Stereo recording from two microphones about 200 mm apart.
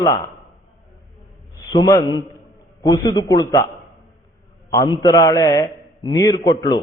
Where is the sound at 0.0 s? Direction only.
20° left (ahead or behind).